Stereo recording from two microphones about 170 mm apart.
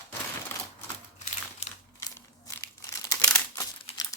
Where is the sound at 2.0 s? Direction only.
20° left (ahead or behind).